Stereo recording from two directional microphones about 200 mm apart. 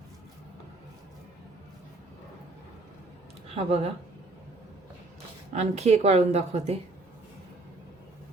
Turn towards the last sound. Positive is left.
turn(degrees=-30)  # may be behind; listen again after turning